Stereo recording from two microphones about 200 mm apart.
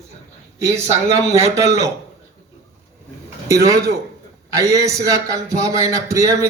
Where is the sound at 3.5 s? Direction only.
15° right (ahead or behind).